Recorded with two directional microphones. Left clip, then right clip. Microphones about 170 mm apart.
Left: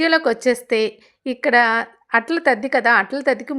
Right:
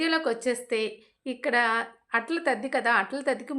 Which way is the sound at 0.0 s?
45° left (ahead or behind).